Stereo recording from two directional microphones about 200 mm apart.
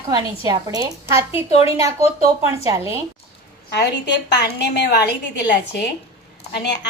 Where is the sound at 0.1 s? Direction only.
20° right (ahead or behind).